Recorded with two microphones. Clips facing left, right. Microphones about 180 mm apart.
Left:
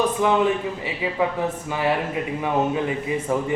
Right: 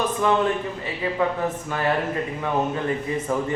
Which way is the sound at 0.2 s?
15° left (ahead or behind).